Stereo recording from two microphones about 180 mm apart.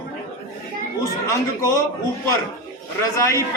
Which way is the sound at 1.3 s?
15° left (ahead or behind).